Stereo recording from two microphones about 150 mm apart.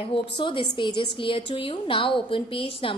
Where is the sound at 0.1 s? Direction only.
35° left (ahead or behind).